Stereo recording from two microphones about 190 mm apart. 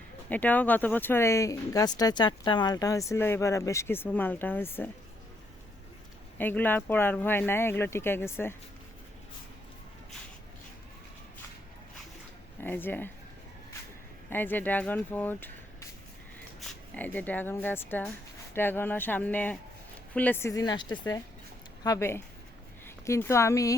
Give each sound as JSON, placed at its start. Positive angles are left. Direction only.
{"t": 0.3, "sound": "speech", "side_deg": 10}
{"t": 6.4, "sound": "speech", "side_deg": 10}
{"t": 12.5, "sound": "speech", "side_deg": 10}
{"t": 14.3, "sound": "speech", "side_deg": 10}
{"t": 21.8, "sound": "speech", "side_deg": 15}